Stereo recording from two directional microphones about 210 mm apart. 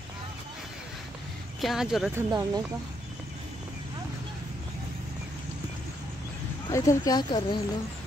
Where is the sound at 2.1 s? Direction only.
20° right (ahead or behind).